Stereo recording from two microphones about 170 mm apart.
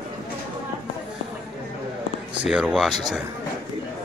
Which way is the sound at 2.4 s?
5° right (ahead or behind).